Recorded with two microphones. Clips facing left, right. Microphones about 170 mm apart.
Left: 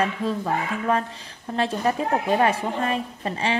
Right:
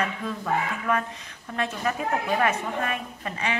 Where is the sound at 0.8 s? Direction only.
30° left (ahead or behind).